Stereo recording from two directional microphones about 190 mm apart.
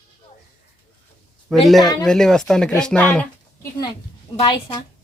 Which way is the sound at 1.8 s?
20° left (ahead or behind).